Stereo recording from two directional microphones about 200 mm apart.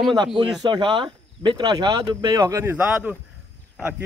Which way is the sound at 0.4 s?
20° right (ahead or behind).